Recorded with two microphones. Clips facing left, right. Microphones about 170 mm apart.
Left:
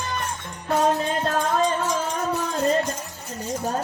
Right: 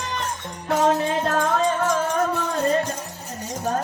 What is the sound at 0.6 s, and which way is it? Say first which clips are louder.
Music: right 1 dB; 75° right (ahead or behind).